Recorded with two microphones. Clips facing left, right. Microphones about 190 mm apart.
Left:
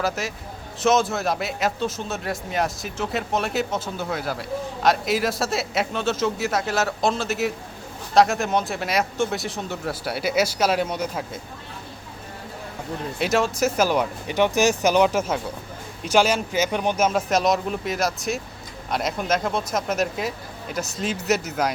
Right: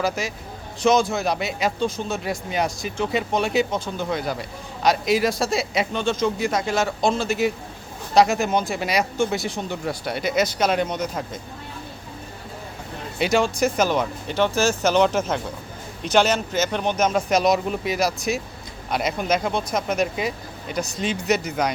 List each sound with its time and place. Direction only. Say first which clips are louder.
0.0 s speech: right 1 dB; centre (ahead or behind)
13.1 s speech: right 2 dB; centre (ahead or behind)